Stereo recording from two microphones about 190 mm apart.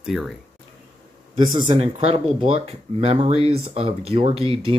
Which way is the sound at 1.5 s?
25° right (ahead or behind).